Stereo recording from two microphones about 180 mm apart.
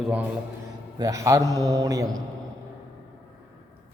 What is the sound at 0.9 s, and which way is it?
A man's voice, 20° right (ahead or behind).